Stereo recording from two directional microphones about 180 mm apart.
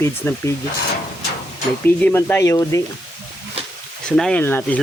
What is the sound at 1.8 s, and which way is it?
Speech, 10° left (ahead or behind).